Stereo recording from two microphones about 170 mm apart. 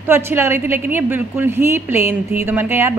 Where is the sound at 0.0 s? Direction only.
15° right (ahead or behind).